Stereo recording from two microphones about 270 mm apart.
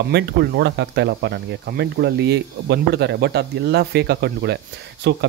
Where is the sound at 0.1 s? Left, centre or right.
Right.